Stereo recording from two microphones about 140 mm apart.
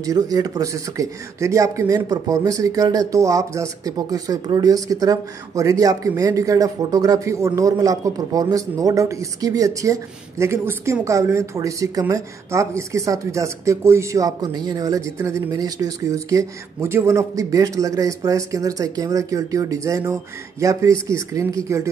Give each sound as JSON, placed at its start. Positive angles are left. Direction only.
{"t": 0.0, "sound": "speech", "side_deg": -25}